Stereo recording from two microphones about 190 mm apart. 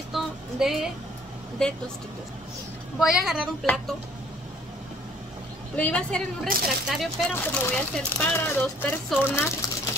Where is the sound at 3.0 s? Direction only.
5° right (ahead or behind).